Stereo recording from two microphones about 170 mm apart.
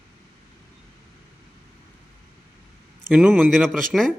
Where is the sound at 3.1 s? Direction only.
Centre (ahead or behind).